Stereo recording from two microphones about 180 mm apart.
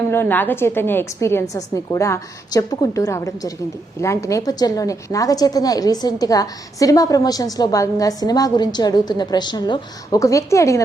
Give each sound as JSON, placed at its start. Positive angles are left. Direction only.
{"t": 0.1, "sound": "a woman's voice", "side_deg": 10}